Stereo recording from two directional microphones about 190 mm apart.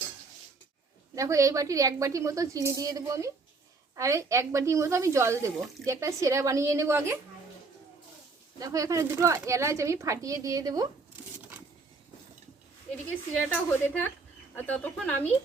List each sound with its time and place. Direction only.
1.1 s speech: 15° right (ahead or behind)
8.5 s speech: 20° right (ahead or behind)
13.3 s a woman's voice: 10° left (ahead or behind)